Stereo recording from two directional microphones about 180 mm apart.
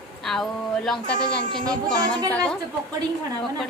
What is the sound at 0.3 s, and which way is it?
Speech, centre (ahead or behind).